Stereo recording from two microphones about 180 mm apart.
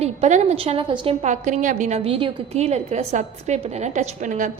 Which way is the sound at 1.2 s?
45° right (ahead or behind).